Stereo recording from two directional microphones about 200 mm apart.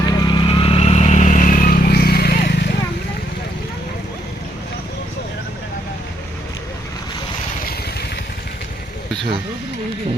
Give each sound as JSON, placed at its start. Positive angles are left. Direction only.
{"t": 0.0, "sound": "vehicle", "side_deg": 20}